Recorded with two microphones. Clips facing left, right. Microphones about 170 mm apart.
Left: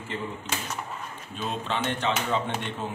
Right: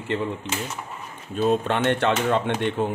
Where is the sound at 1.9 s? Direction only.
65° right (ahead or behind).